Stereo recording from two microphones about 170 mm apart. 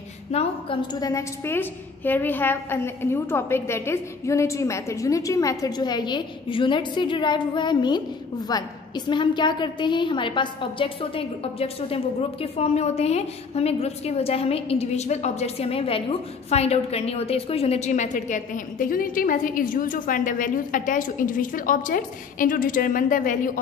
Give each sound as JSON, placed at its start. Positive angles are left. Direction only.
{"t": 0.3, "sound": "a woman's voice", "side_deg": 35}
{"t": 1.0, "sound": "a woman's voice", "side_deg": 15}